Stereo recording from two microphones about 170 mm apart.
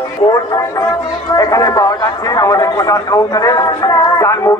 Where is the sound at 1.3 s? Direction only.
20° left (ahead or behind).